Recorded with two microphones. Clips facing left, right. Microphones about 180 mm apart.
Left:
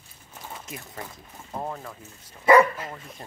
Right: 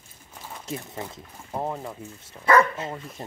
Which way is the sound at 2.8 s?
25° right (ahead or behind).